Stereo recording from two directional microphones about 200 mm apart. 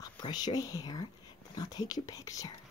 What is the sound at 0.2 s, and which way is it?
Speech, 20° left (ahead or behind).